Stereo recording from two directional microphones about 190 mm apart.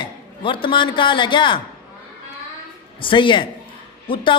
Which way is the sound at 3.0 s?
25° left (ahead or behind).